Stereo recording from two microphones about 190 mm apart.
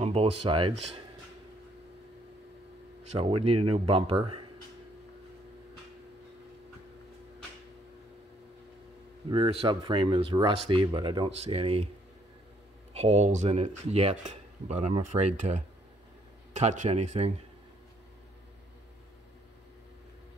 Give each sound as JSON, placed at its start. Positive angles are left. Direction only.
{"t": 0.0, "sound": "speech", "side_deg": -30}
{"t": 3.2, "sound": "speech", "side_deg": -30}
{"t": 9.3, "sound": "speech", "side_deg": -30}
{"t": 12.9, "sound": "speech", "side_deg": -35}